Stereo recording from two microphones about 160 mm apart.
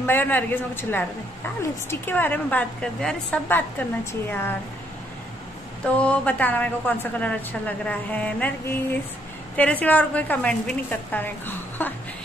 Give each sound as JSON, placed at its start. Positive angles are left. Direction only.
{"t": 0.0, "sound": "a woman's voice", "side_deg": 10}
{"t": 5.9, "sound": "a woman's voice", "side_deg": 10}
{"t": 9.6, "sound": "a woman's voice", "side_deg": 10}